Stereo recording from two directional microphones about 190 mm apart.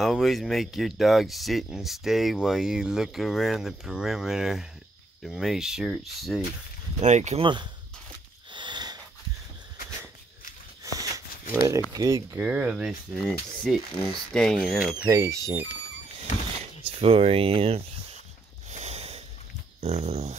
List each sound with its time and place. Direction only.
0.0 s speech: centre (ahead or behind)
7.0 s speech: 35° right (ahead or behind)
8.5 s wheeze: 25° right (ahead or behind)
10.8 s a sound: 15° right (ahead or behind)
11.9 s speech: 20° right (ahead or behind)
12.4 s speech: 5° right (ahead or behind)
15.0 s speech: 15° right (ahead or behind)
17.0 s speech: 30° right (ahead or behind)
18.7 s snort: 35° right (ahead or behind)
19.8 s speech: 35° right (ahead or behind)